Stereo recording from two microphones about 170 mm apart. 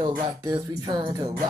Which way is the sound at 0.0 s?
25° right (ahead or behind).